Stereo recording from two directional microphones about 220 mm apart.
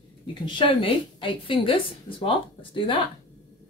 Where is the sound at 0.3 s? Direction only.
20° left (ahead or behind).